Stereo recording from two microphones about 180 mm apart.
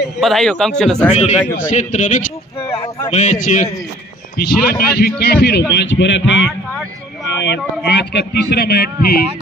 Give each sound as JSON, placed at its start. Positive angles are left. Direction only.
{"t": 0.2, "sound": "a man's voice", "side_deg": 0}
{"t": 1.1, "sound": "a man's voice", "side_deg": 40}
{"t": 2.6, "sound": "speech", "side_deg": 30}
{"t": 3.1, "sound": "a man's voice", "side_deg": 40}
{"t": 4.4, "sound": "speech", "side_deg": 60}
{"t": 5.7, "sound": "a man's voice", "side_deg": 90}
{"t": 7.4, "sound": "a man's voice", "side_deg": 70}